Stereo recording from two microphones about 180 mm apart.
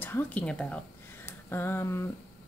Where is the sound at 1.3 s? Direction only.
10° left (ahead or behind).